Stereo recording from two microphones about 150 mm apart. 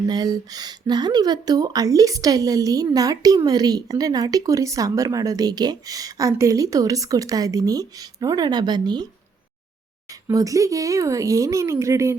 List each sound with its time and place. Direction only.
0.1 s speech: 25° right (ahead or behind)
10.1 s speech: 20° right (ahead or behind)